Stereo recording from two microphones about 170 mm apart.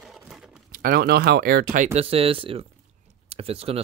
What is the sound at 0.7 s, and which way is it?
Speech, 60° right (ahead or behind).